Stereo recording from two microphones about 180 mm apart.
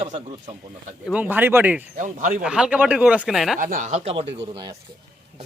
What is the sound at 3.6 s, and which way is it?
Speech, 50° right (ahead or behind).